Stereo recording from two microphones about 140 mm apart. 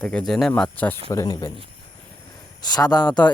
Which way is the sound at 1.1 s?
25° left (ahead or behind).